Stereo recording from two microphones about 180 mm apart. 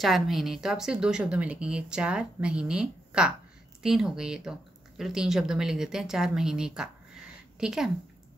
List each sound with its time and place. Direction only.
0.0 s speech: centre (ahead or behind)